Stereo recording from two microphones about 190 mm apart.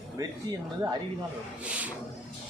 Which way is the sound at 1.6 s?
5° right (ahead or behind).